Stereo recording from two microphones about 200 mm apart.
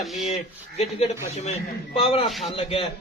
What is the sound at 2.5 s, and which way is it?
Speech, 25° left (ahead or behind).